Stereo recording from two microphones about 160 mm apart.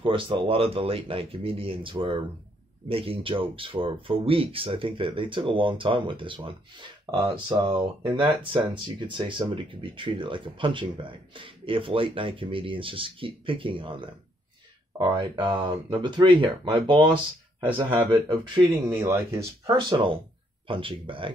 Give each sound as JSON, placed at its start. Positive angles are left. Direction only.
{"t": 0.0, "sound": "speech", "side_deg": -30}
{"t": 18.9, "sound": "speech", "side_deg": -15}
{"t": 20.6, "sound": "speech", "side_deg": -35}